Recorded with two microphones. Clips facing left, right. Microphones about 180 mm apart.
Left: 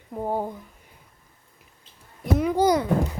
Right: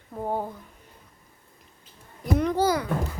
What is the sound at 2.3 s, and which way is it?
Speech, 10° left (ahead or behind).